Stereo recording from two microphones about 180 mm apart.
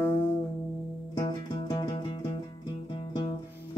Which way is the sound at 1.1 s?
20° left (ahead or behind).